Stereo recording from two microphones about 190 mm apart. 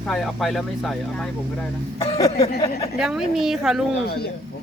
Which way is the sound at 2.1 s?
20° left (ahead or behind).